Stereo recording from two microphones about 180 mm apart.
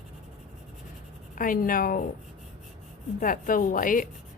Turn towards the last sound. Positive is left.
turn(degrees=50)  # may be behind; listen again after turning